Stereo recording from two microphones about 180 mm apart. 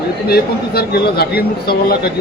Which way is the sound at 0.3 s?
60° left (ahead or behind).